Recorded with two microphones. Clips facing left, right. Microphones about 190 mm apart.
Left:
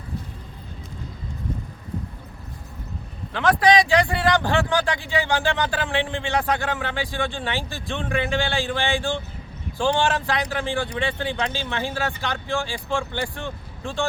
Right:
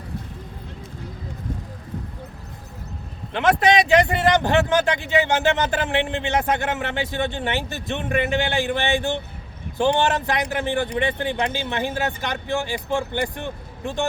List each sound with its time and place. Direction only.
3.3 s speech: 25° right (ahead or behind)